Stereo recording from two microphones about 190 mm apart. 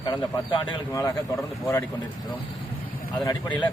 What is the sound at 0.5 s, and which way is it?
Speech, 15° left (ahead or behind).